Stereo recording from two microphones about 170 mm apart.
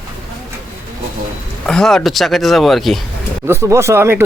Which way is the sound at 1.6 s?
5° left (ahead or behind).